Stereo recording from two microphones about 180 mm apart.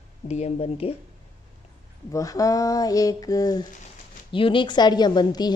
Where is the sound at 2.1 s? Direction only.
20° left (ahead or behind).